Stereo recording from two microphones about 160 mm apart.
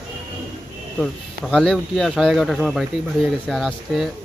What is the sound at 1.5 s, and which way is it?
Speech, centre (ahead or behind).